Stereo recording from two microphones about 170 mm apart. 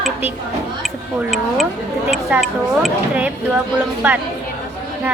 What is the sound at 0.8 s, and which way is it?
A woman's voice, centre (ahead or behind).